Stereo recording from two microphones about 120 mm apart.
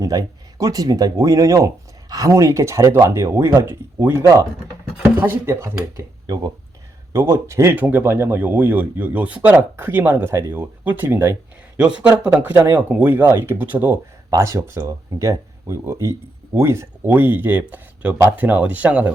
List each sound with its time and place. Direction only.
0.0 s speech: 30° right (ahead or behind)
6.2 s speech: 35° right (ahead or behind)
7.1 s speech: 20° right (ahead or behind)